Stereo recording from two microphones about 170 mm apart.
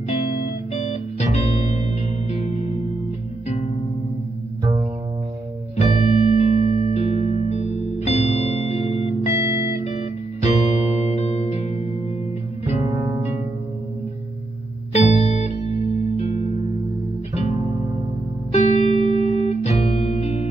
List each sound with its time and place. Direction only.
0.7 s music: 40° left (ahead or behind)
5.8 s music: 45° left (ahead or behind)
9.3 s music: 15° right (ahead or behind)
9.8 s music: 40° left (ahead or behind)
12.8 s music: 20° right (ahead or behind)
14.9 s music: 40° left (ahead or behind)
18.5 s music: 40° left (ahead or behind)